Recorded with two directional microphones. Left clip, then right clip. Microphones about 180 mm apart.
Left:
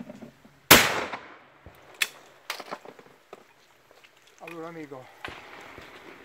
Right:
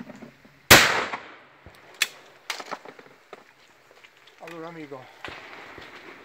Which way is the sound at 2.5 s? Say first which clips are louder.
Right 3 dB; 30° right (ahead or behind).